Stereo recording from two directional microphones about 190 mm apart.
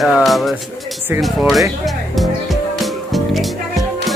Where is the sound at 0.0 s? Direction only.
Centre (ahead or behind).